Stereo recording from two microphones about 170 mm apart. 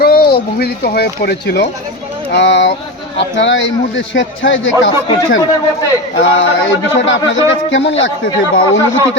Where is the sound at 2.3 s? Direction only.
90° left.